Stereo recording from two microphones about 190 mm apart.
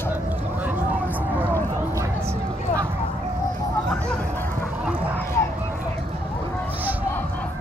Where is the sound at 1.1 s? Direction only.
10° right (ahead or behind).